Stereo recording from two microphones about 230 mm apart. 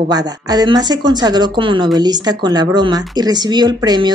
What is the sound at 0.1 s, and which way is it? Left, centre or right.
A woman's voice, centre.